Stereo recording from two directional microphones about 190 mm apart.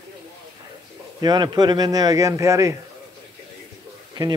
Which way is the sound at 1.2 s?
20° right (ahead or behind).